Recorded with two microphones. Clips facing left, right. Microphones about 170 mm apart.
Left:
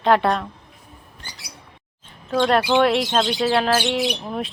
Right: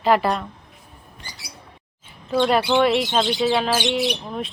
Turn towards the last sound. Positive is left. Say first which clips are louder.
# even
turn(degrees=5)  # may be behind; listen again after turning